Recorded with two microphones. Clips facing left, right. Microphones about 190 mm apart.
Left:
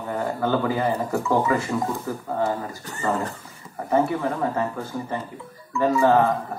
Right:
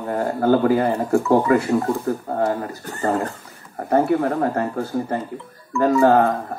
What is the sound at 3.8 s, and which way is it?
Speech, 60° right (ahead or behind).